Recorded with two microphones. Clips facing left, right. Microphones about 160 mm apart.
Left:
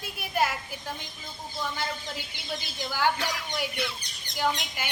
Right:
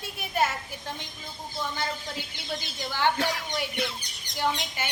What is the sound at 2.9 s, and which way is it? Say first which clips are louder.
Speech: right 1 dB; 10° left (ahead or behind).